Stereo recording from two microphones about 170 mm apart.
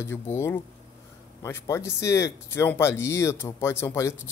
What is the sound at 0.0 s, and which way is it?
A man's voice, 15° left (ahead or behind).